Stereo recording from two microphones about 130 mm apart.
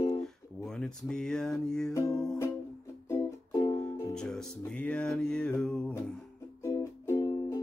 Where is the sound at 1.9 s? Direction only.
25° left (ahead or behind).